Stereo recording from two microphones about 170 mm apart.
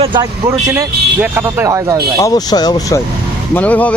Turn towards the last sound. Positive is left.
turn(degrees=10)  # may be behind; listen again after turning